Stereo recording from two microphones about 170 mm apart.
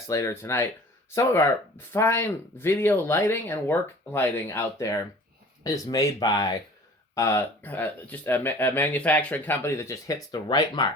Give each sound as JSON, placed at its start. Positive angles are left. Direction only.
{"t": 0.1, "sound": "speech", "side_deg": 15}